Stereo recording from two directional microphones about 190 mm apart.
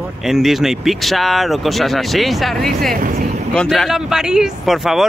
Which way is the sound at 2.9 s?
45° right (ahead or behind).